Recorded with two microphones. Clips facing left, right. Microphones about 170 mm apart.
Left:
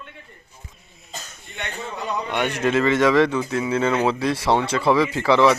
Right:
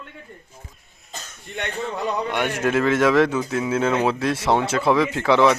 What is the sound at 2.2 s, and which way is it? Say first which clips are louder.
A man's voice: left 3 dB; 5° right (ahead or behind).